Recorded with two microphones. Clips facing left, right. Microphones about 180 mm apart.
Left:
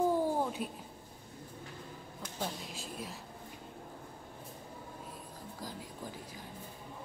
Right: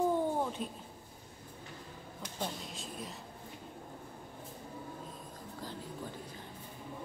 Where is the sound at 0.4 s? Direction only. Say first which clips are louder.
Left 1 dB; 10° left (ahead or behind).